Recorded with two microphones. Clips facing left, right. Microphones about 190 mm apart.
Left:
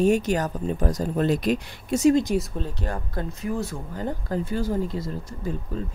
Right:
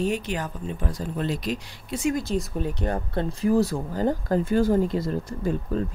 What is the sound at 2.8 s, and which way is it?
Speech, 25° right (ahead or behind).